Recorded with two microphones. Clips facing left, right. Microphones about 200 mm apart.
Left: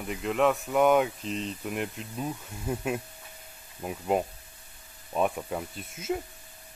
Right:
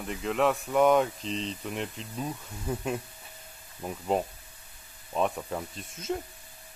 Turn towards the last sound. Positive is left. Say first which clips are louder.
# left 1 dB
turn(degrees=5)  # may be behind; listen again after turning